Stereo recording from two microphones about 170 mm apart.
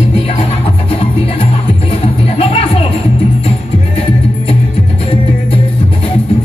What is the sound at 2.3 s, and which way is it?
Music, 35° left (ahead or behind).